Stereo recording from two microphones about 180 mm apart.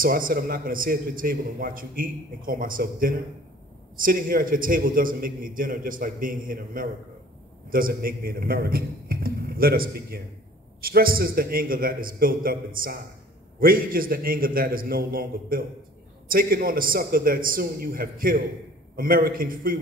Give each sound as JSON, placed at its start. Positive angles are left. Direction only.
{"t": 0.0, "sound": "a man's voice", "side_deg": -50}